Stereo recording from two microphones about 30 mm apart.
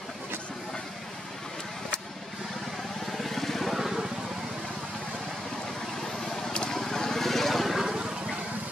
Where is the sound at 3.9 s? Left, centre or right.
Centre.